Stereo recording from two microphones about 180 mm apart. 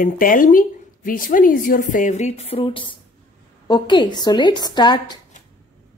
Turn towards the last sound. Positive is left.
turn(degrees=25)  # may be behind; listen again after turning